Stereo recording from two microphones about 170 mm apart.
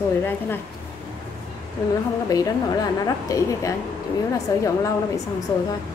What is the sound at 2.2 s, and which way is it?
A woman's voice, 20° left (ahead or behind).